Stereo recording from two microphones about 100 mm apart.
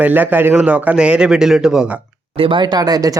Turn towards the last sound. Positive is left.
turn(degrees=-40)  # may be behind; listen again after turning